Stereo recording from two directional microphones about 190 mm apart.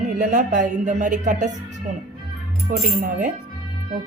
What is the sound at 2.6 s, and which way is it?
Speech, 50° right (ahead or behind).